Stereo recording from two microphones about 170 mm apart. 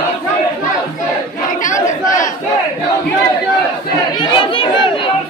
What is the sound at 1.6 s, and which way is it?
Crowd, 50° left (ahead or behind).